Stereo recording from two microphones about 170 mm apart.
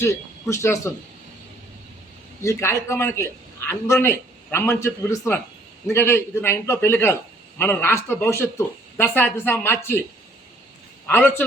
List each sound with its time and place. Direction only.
0.0 s speech: 15° left (ahead or behind)
2.4 s speech: 15° left (ahead or behind)
11.0 s a man's voice: 10° left (ahead or behind)